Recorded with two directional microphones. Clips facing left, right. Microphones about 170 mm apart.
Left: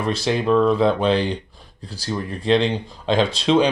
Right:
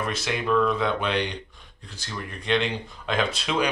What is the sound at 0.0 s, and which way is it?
Speech, 30° left (ahead or behind).